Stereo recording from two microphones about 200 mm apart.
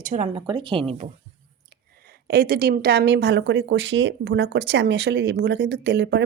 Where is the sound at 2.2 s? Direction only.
50° right (ahead or behind).